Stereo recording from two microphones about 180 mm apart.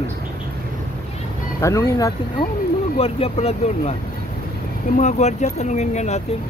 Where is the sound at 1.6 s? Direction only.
20° left (ahead or behind).